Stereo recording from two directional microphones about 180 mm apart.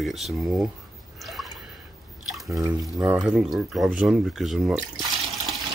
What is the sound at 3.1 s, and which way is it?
Speech, 5° right (ahead or behind).